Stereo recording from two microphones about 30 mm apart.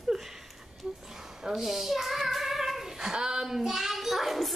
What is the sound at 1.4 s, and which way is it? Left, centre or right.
Speech, centre.